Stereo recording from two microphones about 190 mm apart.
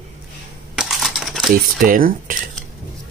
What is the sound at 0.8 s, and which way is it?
Typewriter, centre (ahead or behind).